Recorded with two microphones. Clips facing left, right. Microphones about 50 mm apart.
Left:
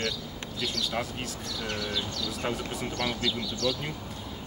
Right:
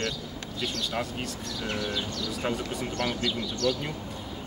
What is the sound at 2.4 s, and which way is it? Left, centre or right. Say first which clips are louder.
Speech: right 2 dB; centre.